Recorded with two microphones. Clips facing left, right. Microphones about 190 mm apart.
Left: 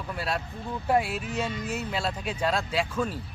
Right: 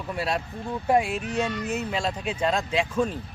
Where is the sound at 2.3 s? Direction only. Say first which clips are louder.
Right 2 dB; 10° right (ahead or behind).